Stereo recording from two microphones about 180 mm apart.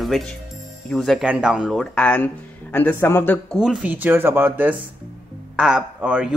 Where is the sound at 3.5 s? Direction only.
5° right (ahead or behind).